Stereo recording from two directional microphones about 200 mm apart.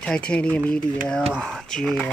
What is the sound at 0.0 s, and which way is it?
Speech, 5° left (ahead or behind).